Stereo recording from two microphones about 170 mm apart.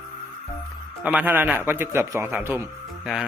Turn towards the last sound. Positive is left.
turn(degrees=0)  # may be behind; listen again after turning